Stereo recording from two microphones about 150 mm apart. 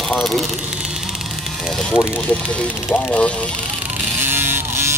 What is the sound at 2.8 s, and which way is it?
Speech, 15° left (ahead or behind).